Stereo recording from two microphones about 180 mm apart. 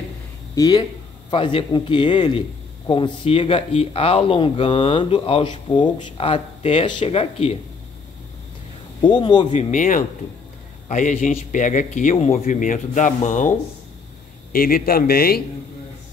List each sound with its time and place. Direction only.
0.6 s a man's voice: 20° left (ahead or behind)
9.0 s a man's voice: 25° left (ahead or behind)
9.5 s a man's voice: 40° left (ahead or behind)
14.5 s a man's voice: 55° left (ahead or behind)